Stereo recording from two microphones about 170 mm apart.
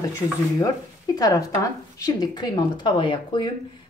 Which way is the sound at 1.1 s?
20° left (ahead or behind).